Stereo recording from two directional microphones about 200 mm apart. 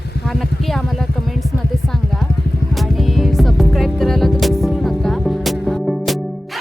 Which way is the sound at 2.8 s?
Centre (ahead or behind).